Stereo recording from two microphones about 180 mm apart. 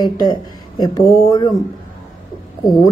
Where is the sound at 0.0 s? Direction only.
25° left (ahead or behind).